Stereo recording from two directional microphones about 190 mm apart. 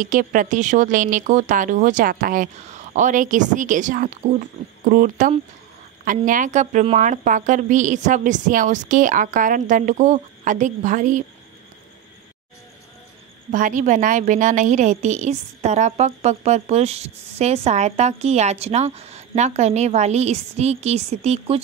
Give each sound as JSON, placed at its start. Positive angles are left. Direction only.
{"t": 0.0, "sound": "a woman's voice", "side_deg": -45}
{"t": 13.5, "sound": "a woman's voice", "side_deg": -45}